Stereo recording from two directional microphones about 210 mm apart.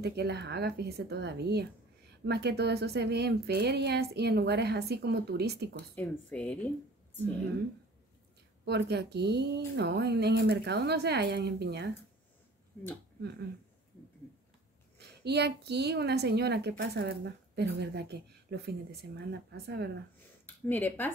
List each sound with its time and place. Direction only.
0.0 s a woman's voice: 50° right (ahead or behind)
5.9 s speech: 5° left (ahead or behind)
8.6 s a woman's voice: 50° right (ahead or behind)
15.2 s a woman's voice: 50° right (ahead or behind)
20.4 s speech: 10° left (ahead or behind)